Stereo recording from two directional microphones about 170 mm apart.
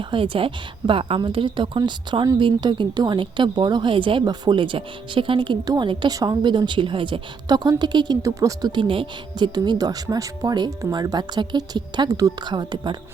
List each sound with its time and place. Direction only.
0.0 s a woman's voice: 30° right (ahead or behind)